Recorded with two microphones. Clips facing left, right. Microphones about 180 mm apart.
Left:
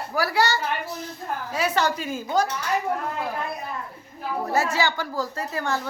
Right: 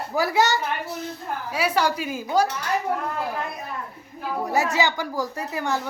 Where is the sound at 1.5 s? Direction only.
10° right (ahead or behind).